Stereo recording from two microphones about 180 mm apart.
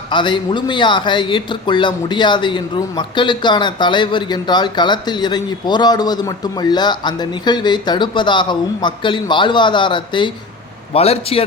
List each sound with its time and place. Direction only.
0.1 s a man's voice: 25° left (ahead or behind)